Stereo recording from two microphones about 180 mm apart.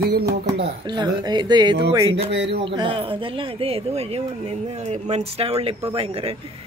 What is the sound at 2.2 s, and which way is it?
Speech, 75° right (ahead or behind).